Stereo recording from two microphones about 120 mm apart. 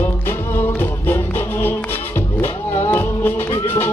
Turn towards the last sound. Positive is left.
turn(degrees=20)  # may be behind; listen again after turning